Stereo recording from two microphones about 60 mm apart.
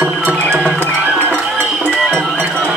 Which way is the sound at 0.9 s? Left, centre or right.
Right.